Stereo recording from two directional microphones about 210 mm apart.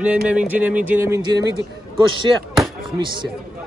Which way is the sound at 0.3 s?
5° right (ahead or behind).